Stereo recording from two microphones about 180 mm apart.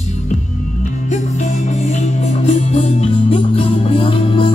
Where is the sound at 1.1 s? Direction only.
40° left (ahead or behind).